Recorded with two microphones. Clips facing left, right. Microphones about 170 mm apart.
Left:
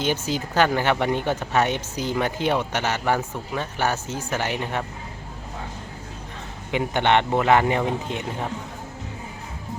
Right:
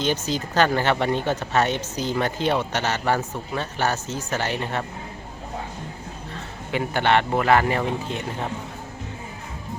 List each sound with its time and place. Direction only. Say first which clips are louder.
0.0 s speech: even; 10° left (ahead or behind)
6.7 s speech: left 1 dB; 20° left (ahead or behind)